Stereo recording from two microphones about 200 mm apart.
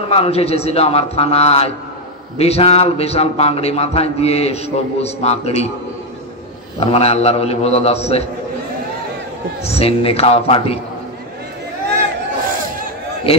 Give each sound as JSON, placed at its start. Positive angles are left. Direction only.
{"t": 0.1, "sound": "a man's voice", "side_deg": 30}
{"t": 6.8, "sound": "a man's voice", "side_deg": 30}
{"t": 9.7, "sound": "a man's voice", "side_deg": 30}
{"t": 13.3, "sound": "a man's voice", "side_deg": 30}